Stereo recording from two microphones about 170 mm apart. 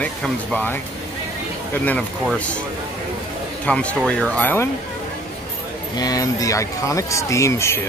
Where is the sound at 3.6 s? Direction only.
5° left (ahead or behind).